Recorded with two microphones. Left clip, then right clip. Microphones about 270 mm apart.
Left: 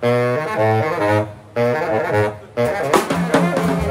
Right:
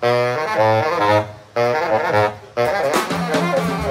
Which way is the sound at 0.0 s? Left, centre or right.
Centre.